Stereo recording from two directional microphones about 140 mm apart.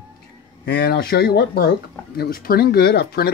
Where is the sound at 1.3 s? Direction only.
90° left.